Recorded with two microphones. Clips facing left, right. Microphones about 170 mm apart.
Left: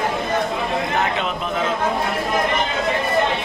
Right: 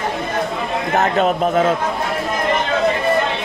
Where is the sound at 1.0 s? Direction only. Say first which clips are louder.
Right 6 dB; 45° right (ahead or behind).